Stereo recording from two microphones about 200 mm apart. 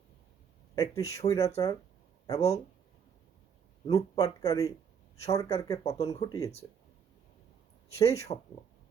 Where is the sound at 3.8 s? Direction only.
15° left (ahead or behind).